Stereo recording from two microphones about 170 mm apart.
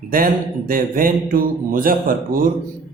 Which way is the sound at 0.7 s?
55° right (ahead or behind).